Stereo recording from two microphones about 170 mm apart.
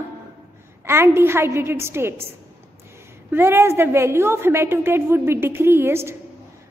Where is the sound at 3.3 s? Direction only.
15° right (ahead or behind).